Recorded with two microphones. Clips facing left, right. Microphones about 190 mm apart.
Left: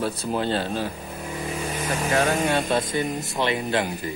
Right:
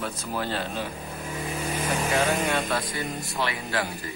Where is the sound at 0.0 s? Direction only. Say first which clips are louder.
Left 5 dB; 30° left (ahead or behind).